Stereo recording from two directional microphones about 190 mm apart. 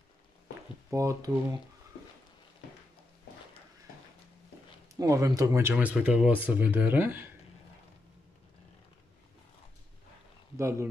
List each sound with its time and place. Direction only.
0.8 s speech: 15° right (ahead or behind)
4.9 s speech: 15° right (ahead or behind)
10.6 s speech: 15° right (ahead or behind)